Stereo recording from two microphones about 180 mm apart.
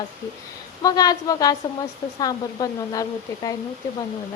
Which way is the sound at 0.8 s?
20° left (ahead or behind).